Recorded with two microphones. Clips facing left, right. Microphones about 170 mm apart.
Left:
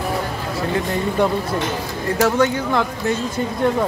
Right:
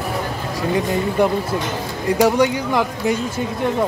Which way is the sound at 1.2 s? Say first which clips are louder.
Even; 10° right (ahead or behind).